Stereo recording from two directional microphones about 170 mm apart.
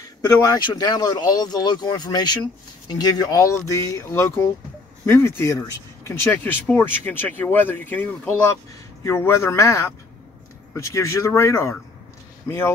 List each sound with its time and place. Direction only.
0.0 s speech: 20° left (ahead or behind)